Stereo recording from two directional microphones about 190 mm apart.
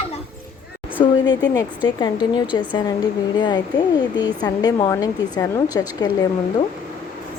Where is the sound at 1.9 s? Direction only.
25° left (ahead or behind).